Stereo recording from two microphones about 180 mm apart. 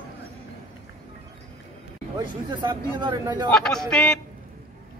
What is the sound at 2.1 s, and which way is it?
Speech, 25° right (ahead or behind).